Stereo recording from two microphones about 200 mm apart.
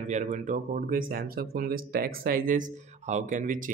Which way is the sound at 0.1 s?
35° right (ahead or behind).